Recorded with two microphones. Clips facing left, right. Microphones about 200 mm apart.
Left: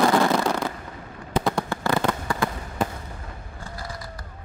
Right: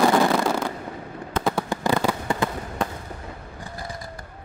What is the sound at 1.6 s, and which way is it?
Fireworks, 15° right (ahead or behind).